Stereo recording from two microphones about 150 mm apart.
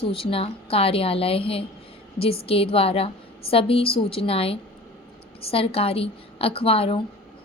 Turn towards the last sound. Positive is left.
turn(degrees=40)  # may be behind; listen again after turning